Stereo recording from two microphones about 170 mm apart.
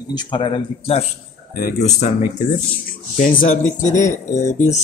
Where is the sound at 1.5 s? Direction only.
55° left (ahead or behind).